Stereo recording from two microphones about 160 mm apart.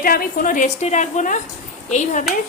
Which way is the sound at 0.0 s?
65° left (ahead or behind).